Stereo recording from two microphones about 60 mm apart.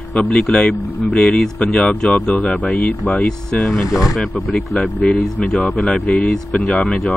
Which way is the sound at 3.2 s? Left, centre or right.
Centre.